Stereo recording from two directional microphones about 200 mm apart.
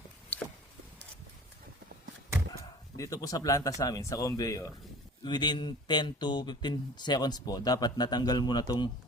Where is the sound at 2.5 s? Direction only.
15° left (ahead or behind).